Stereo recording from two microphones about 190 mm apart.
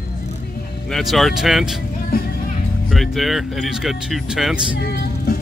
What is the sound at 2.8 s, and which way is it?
Speech, centre (ahead or behind).